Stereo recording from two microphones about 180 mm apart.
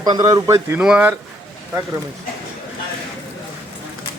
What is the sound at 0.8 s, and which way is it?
Speech, 5° right (ahead or behind).